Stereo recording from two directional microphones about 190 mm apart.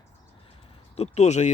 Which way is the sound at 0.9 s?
35° left (ahead or behind).